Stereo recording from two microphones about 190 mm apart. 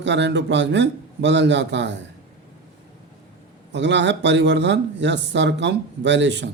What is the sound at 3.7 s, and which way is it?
Speech, 70° right (ahead or behind).